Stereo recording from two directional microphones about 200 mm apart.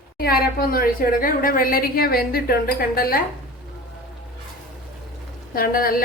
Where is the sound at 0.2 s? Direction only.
50° left (ahead or behind).